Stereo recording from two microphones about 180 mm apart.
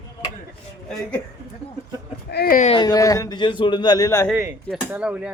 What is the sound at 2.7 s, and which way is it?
Speech, 20° left (ahead or behind).